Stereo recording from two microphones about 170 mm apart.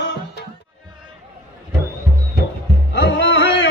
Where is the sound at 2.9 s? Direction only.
90° left.